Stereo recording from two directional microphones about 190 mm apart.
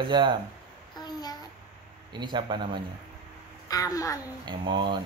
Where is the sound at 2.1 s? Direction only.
25° right (ahead or behind).